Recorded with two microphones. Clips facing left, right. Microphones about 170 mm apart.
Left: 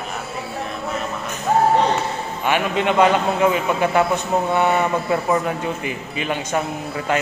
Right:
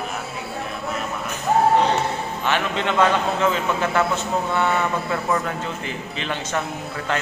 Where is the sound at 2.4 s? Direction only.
10° left (ahead or behind).